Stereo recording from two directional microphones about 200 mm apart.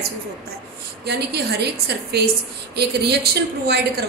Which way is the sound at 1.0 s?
55° right (ahead or behind).